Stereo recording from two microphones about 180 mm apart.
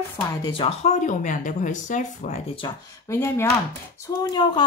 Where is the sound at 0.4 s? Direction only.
30° left (ahead or behind).